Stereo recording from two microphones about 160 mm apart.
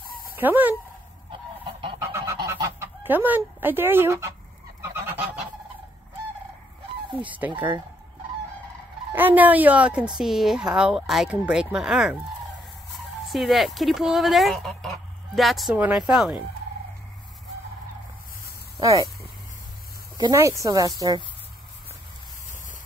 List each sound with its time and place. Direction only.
0.4 s speech: 10° right (ahead or behind)
2.0 s goose: 15° right (ahead or behind)
2.6 s fowl: 15° right (ahead or behind)
5.0 s goose: 10° right (ahead or behind)
7.2 s speech: 10° right (ahead or behind)
9.1 s speech: 10° right (ahead or behind)
13.2 s speech: centre (ahead or behind)
18.8 s speech: 20° right (ahead or behind)
20.2 s speech: 20° right (ahead or behind)